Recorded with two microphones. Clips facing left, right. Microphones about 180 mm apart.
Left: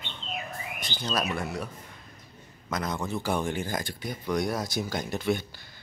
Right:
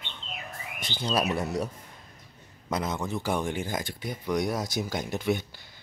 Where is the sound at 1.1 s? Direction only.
35° right (ahead or behind).